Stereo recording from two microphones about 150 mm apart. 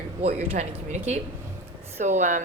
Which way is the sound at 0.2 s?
40° right (ahead or behind).